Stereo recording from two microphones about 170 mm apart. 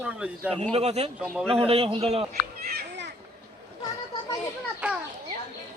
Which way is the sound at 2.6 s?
65° right (ahead or behind).